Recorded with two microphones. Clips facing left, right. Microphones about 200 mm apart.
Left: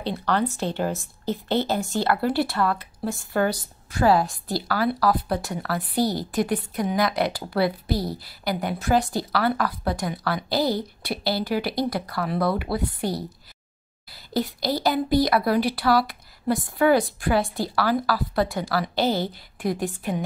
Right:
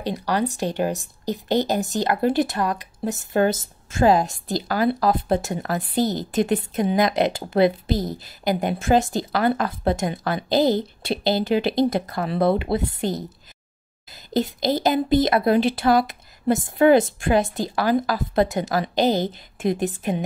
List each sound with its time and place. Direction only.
0.0 s speech: 10° right (ahead or behind)